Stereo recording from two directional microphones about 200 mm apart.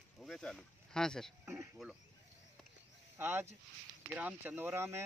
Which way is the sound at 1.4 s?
15° right (ahead or behind).